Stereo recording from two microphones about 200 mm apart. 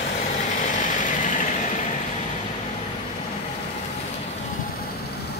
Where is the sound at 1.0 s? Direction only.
40° left (ahead or behind).